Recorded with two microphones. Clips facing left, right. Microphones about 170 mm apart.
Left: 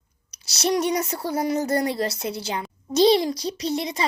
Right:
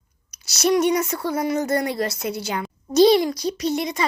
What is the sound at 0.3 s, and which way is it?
A child's voice, 30° left (ahead or behind).